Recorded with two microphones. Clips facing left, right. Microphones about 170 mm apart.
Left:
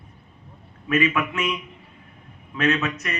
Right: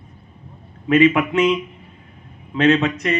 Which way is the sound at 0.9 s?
30° right (ahead or behind).